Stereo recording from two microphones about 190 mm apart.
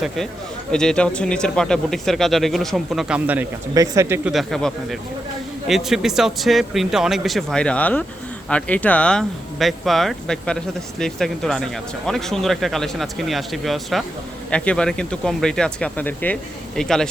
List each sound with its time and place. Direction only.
0.7 s speech: 5° left (ahead or behind); by 4.3 s 15° right (ahead or behind)
4.3 s speech: centre (ahead or behind)